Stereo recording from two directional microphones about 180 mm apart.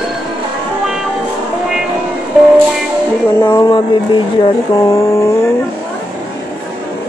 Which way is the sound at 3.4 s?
20° left (ahead or behind).